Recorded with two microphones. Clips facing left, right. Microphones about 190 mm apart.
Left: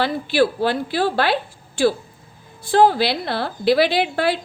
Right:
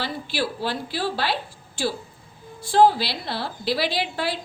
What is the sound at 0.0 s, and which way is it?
A woman's voice, 60° left (ahead or behind).